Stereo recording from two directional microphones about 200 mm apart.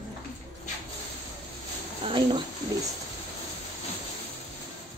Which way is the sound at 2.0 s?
25° right (ahead or behind).